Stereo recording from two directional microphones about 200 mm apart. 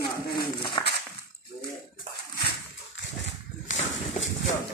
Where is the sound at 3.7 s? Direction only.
30° left (ahead or behind).